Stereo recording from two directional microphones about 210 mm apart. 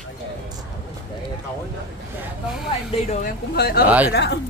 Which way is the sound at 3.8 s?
5° right (ahead or behind).